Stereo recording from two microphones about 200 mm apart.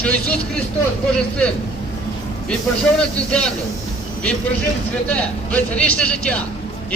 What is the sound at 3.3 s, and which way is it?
Speech, 5° left (ahead or behind).